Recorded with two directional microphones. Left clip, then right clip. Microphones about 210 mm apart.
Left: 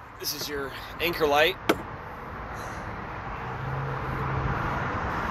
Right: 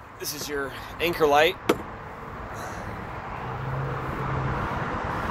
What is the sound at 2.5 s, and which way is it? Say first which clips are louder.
Vehicle: right 2 dB; 20° right (ahead or behind).